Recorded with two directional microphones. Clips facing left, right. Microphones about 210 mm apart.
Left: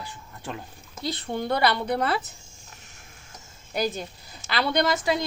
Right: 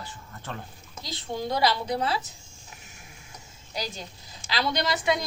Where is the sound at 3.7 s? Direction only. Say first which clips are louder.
Left 8 dB; 55° left (ahead or behind).